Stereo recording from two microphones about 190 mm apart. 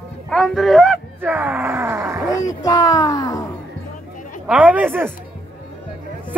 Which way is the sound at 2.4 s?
20° left (ahead or behind).